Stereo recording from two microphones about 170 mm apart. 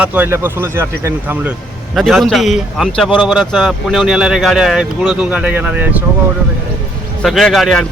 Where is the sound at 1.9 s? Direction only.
Centre (ahead or behind).